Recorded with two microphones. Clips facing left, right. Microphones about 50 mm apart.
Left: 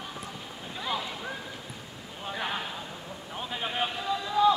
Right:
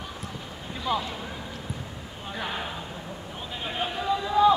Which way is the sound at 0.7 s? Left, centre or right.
Centre.